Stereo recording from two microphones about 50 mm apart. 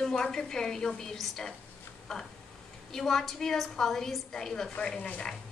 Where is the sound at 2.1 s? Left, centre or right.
Centre.